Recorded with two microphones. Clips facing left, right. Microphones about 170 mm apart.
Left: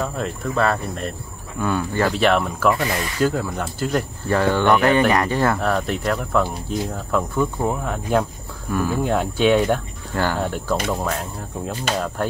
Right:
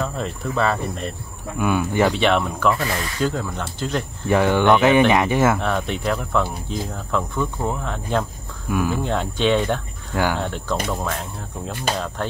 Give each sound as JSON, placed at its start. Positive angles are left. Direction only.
{"t": 0.0, "sound": "speech", "side_deg": 0}
{"t": 1.6, "sound": "speech", "side_deg": -15}
{"t": 2.0, "sound": "speech", "side_deg": 0}
{"t": 4.3, "sound": "speech", "side_deg": -15}
{"t": 4.6, "sound": "speech", "side_deg": 0}
{"t": 8.6, "sound": "speech", "side_deg": -5}
{"t": 8.9, "sound": "speech", "side_deg": 5}